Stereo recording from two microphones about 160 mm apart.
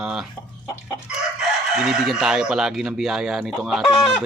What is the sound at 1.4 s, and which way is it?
Chicken, centre (ahead or behind).